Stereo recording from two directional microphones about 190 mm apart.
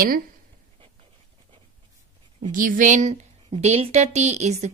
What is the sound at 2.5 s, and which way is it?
A woman's voice, 45° right (ahead or behind).